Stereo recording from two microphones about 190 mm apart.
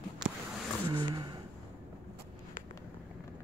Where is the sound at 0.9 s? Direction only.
25° right (ahead or behind).